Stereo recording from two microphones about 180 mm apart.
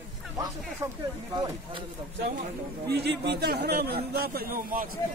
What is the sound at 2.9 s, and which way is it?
A man's voice, 65° right (ahead or behind).